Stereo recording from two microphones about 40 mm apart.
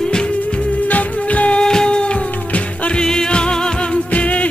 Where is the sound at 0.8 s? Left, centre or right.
Left.